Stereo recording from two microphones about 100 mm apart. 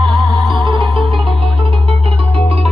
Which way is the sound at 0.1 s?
50° right (ahead or behind).